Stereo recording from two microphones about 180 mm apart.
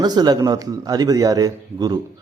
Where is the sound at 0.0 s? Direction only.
20° right (ahead or behind).